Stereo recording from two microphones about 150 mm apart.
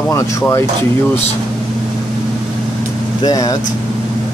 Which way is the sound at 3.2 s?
25° left (ahead or behind).